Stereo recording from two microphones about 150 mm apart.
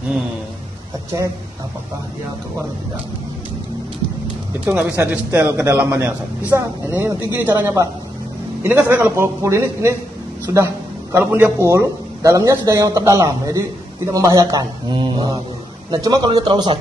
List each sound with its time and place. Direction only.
4.6 s a man's voice: 10° right (ahead or behind); by 16.7 s 30° right (ahead or behind)